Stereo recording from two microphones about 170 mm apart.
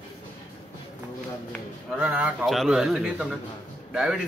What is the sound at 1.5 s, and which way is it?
Speech, 5° right (ahead or behind).